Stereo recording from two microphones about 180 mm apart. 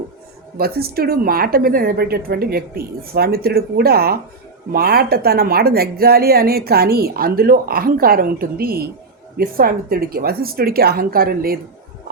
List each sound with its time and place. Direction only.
0.5 s a woman's voice: 60° right (ahead or behind)